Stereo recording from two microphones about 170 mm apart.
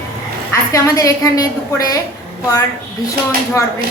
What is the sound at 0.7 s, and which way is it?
A woman's voice, 20° left (ahead or behind).